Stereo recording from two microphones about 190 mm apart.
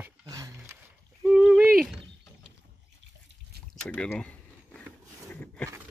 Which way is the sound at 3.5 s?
55° right (ahead or behind).